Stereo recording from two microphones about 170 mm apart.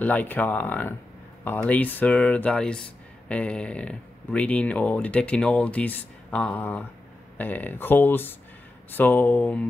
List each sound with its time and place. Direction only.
0.0 s speech: 10° left (ahead or behind)